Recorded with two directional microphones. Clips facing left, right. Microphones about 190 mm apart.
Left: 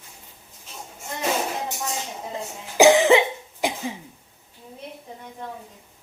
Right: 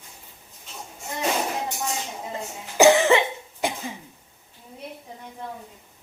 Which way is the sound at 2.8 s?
15° left (ahead or behind).